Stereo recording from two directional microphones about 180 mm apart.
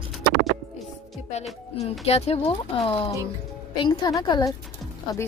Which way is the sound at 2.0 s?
35° left (ahead or behind).